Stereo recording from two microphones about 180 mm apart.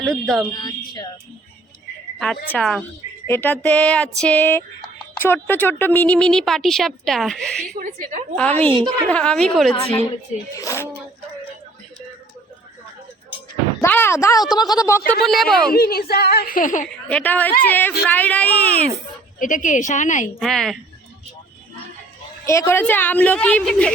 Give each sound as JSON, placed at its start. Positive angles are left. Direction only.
{"t": 0.0, "sound": "a woman's voice", "side_deg": 0}
{"t": 0.5, "sound": "a woman's voice", "side_deg": 20}
{"t": 2.1, "sound": "a woman's voice", "side_deg": 5}
{"t": 7.8, "sound": "a woman's voice", "side_deg": -45}
{"t": 9.0, "sound": "a woman's voice", "side_deg": 5}
{"t": 10.5, "sound": "a woman's voice", "side_deg": 15}
{"t": 13.8, "sound": "a woman's voice", "side_deg": 10}
{"t": 15.2, "sound": "a woman's voice", "side_deg": 0}
{"t": 15.7, "sound": "a woman's voice", "side_deg": 60}
{"t": 17.1, "sound": "a woman's voice", "side_deg": 10}
{"t": 19.4, "sound": "a woman's voice", "side_deg": 45}
{"t": 20.4, "sound": "a woman's voice", "side_deg": 0}
{"t": 22.4, "sound": "a woman's voice", "side_deg": 15}